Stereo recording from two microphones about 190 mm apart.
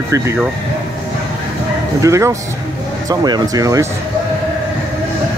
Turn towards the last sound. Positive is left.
turn(degrees=-20)  # may be behind; listen again after turning